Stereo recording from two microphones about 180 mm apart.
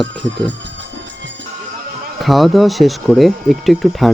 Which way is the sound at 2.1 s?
Centre (ahead or behind).